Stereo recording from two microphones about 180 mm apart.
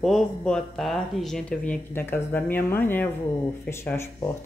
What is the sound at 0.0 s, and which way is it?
Speech, 5° left (ahead or behind).